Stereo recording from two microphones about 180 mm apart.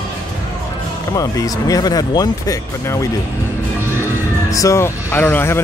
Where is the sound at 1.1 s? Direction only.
20° left (ahead or behind).